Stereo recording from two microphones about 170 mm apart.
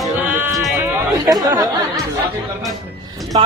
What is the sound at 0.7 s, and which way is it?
Chatter, 15° right (ahead or behind).